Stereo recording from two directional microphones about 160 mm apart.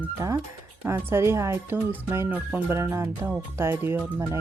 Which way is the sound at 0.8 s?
15° right (ahead or behind).